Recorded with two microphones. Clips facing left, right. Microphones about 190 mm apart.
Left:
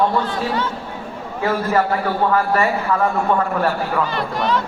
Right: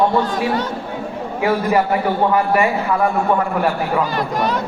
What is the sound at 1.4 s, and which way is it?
A man's voice, 15° right (ahead or behind).